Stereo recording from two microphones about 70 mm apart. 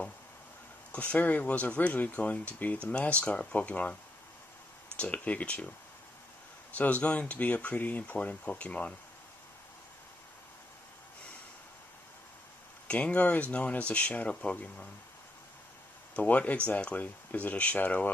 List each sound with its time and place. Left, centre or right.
0.9 s speech: left
6.7 s speech: left
12.8 s speech: centre
16.2 s speech: left